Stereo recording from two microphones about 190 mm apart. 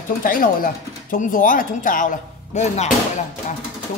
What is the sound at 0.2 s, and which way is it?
Speech, 45° left (ahead or behind).